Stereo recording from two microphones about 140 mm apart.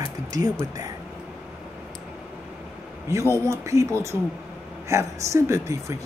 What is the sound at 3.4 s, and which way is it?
Speech, 20° right (ahead or behind).